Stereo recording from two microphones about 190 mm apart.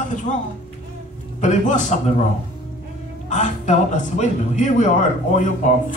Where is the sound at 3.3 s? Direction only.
40° left (ahead or behind).